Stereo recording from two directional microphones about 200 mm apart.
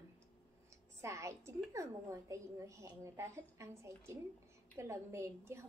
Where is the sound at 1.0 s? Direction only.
15° right (ahead or behind).